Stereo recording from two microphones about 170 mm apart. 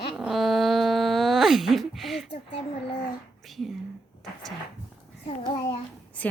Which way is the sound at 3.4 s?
Centre (ahead or behind).